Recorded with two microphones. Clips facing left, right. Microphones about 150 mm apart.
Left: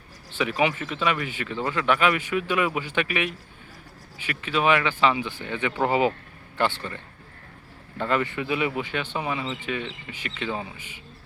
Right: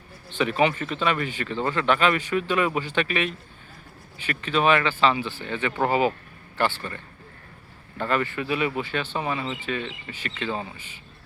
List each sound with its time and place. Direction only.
0.3 s speech: 10° left (ahead or behind)
8.0 s speech: 20° left (ahead or behind)